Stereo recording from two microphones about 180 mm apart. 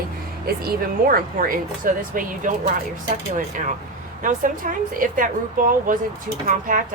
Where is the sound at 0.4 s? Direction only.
55° right (ahead or behind).